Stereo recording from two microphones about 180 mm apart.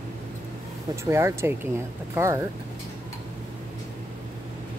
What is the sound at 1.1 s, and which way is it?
Speech, 15° right (ahead or behind).